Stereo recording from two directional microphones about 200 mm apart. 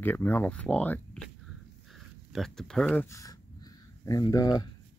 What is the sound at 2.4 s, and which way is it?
Speech, centre (ahead or behind).